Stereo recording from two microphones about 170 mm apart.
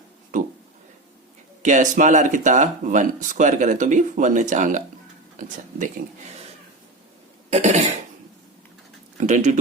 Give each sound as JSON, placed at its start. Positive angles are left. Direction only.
{"t": 1.6, "sound": "speech", "side_deg": -45}
{"t": 7.5, "sound": "cough", "side_deg": -40}
{"t": 9.1, "sound": "speech", "side_deg": -45}